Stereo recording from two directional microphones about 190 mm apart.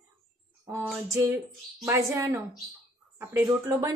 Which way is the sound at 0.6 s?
10° right (ahead or behind).